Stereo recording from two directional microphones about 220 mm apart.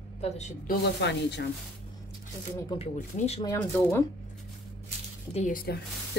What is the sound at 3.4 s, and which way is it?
Speech, 15° left (ahead or behind).